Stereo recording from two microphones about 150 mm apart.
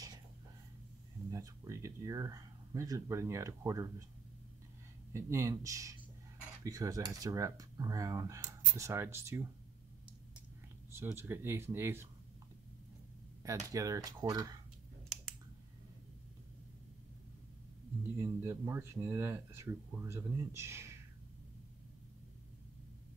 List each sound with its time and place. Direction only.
1.3 s speech: 20° right (ahead or behind)
5.1 s speech: 20° right (ahead or behind)
10.9 s speech: 15° right (ahead or behind)
13.4 s speech: 20° right (ahead or behind)
18.2 s speech: 15° right (ahead or behind)